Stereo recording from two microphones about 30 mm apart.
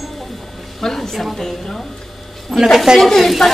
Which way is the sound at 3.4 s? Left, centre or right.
Centre.